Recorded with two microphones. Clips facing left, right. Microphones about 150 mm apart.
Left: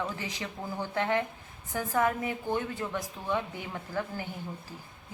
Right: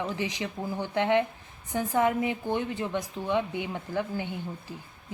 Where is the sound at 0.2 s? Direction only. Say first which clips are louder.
Right 5 dB; 15° right (ahead or behind).